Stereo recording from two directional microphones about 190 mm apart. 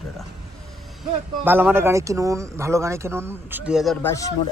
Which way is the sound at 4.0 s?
15° left (ahead or behind).